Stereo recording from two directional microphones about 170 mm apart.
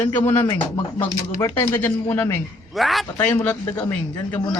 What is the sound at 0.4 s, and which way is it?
Speech, 25° left (ahead or behind).